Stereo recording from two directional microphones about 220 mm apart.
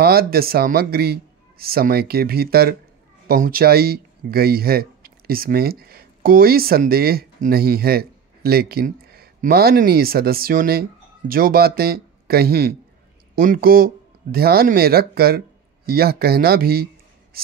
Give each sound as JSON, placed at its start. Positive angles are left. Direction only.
{"t": 0.0, "sound": "speech", "side_deg": -45}